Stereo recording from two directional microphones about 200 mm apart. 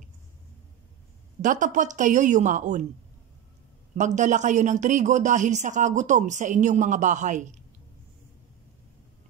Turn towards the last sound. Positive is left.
turn(degrees=-40)  # may be behind; listen again after turning